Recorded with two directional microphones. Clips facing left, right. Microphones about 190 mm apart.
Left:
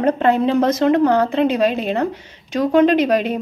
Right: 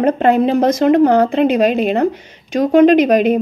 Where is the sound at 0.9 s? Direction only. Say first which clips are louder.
Right 4 dB; 45° right (ahead or behind).